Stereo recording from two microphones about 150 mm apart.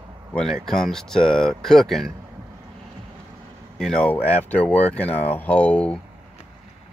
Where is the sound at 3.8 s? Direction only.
5° left (ahead or behind).